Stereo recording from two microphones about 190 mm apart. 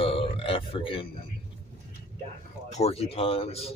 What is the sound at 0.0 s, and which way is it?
Grunt, 30° left (ahead or behind).